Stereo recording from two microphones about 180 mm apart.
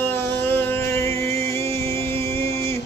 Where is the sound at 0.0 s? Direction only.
10° left (ahead or behind).